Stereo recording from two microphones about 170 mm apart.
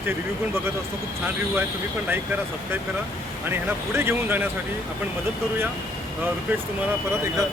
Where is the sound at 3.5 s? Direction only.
15° right (ahead or behind).